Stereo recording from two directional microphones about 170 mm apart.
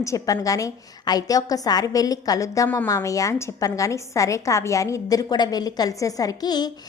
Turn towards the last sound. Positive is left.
turn(degrees=25)  # may be behind; listen again after turning